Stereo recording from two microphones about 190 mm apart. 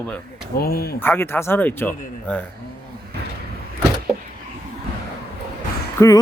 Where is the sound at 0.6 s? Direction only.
55° left (ahead or behind).